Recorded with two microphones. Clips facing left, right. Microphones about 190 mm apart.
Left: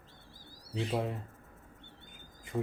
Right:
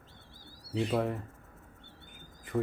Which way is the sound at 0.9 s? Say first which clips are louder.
Right 3 dB; 15° left (ahead or behind).